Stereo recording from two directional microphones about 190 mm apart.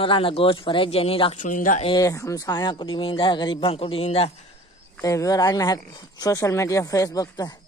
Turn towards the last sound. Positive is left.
turn(degrees=20)  # may be behind; listen again after turning